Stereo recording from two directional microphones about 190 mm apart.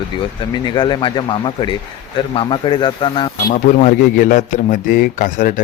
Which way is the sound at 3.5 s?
40° left (ahead or behind).